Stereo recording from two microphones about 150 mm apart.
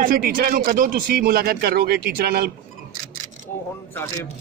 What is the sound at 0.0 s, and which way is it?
Speech, 80° right.